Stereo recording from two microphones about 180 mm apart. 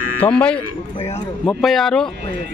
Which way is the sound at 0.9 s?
35° left (ahead or behind).